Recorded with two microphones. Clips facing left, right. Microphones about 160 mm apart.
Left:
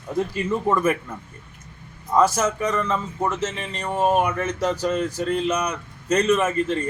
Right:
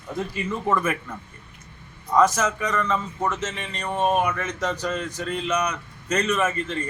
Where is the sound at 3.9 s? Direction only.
5° left (ahead or behind).